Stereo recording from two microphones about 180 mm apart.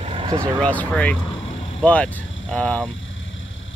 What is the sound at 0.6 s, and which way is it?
Speech, 5° left (ahead or behind).